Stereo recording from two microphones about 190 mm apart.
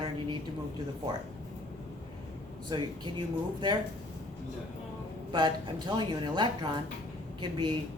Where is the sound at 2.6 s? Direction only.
25° right (ahead or behind).